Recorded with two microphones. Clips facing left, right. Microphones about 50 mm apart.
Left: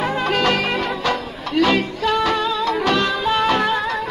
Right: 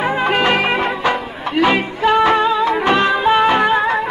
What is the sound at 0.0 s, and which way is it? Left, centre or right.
Music, right.